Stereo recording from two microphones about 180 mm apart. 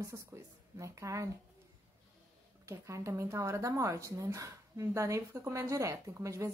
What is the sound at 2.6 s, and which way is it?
A woman's voice, 15° right (ahead or behind).